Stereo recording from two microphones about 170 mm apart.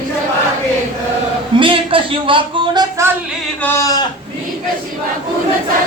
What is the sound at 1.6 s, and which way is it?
Music, 30° right (ahead or behind).